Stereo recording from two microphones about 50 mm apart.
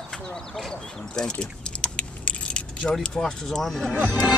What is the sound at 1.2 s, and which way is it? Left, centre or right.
Keys jangling, centre.